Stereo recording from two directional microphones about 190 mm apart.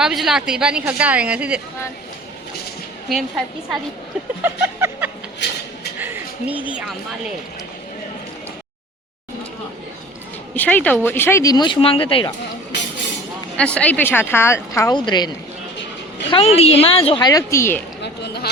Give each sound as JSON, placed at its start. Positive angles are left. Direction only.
{"t": 0.0, "sound": "a woman's voice", "side_deg": 0}
{"t": 3.1, "sound": "a woman's voice", "side_deg": 0}
{"t": 4.4, "sound": "a sound", "side_deg": -10}
{"t": 10.5, "sound": "speech", "side_deg": 10}
{"t": 13.6, "sound": "speech", "side_deg": 5}
{"t": 16.3, "sound": "speech", "side_deg": 30}
{"t": 18.0, "sound": "a sound", "side_deg": 60}